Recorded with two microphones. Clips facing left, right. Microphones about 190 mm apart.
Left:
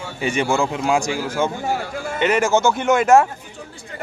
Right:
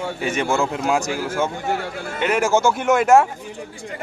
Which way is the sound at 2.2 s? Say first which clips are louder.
Left 1 dB; 5° right (ahead or behind).